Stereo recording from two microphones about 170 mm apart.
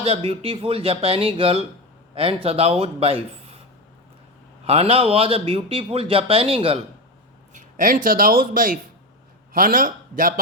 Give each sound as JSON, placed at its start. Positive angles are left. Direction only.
{"t": 0.0, "sound": "a man's voice", "side_deg": -35}
{"t": 4.6, "sound": "a man's voice", "side_deg": -35}
{"t": 7.5, "sound": "speech", "side_deg": -55}